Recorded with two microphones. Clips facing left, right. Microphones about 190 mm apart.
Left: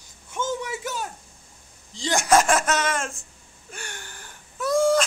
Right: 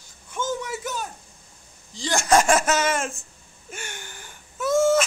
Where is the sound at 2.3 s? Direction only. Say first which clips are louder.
Right 1 dB; centre (ahead or behind).